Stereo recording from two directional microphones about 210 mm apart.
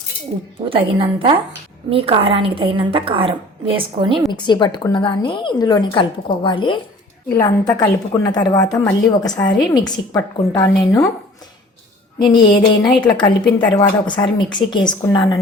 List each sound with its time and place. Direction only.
0.6 s a woman's voice: 25° right (ahead or behind)
4.3 s a woman's voice: 20° left (ahead or behind)
12.5 s a woman's voice: 20° left (ahead or behind)